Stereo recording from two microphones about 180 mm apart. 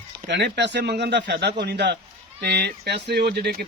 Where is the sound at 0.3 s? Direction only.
70° right (ahead or behind).